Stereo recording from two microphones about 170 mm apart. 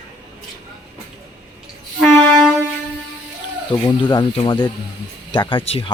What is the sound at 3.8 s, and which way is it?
Speech, 30° left (ahead or behind).